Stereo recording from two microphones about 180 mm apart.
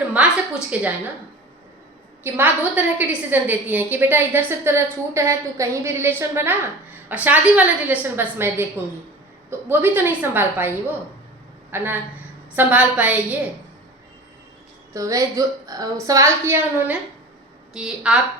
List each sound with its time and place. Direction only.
0.2 s a sound: 10° right (ahead or behind)
0.7 s a woman's voice: 10° right (ahead or behind)
2.2 s a woman's voice: 10° right (ahead or behind)
11.7 s a woman's voice: 10° right (ahead or behind)
14.9 s a woman's voice: 15° right (ahead or behind)